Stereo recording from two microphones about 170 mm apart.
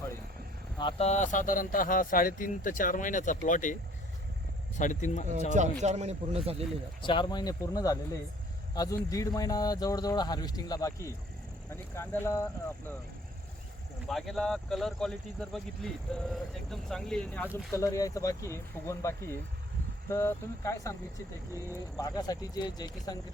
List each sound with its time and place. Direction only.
0.8 s speech: 30° left (ahead or behind); by 3.8 s 50° left (ahead or behind)
4.8 s speech: 50° left (ahead or behind)
5.5 s speech: 40° right (ahead or behind)
7.0 s speech: 30° left (ahead or behind)
14.1 s speech: centre (ahead or behind); by 23.2 s 25° left (ahead or behind)